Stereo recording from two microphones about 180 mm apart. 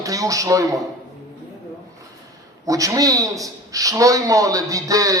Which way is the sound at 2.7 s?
20° right (ahead or behind).